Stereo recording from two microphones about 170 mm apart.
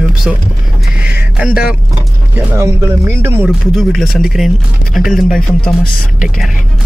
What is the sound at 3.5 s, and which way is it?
Speech, centre (ahead or behind).